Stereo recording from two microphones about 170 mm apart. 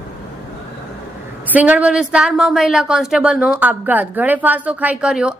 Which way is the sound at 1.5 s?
10° right (ahead or behind).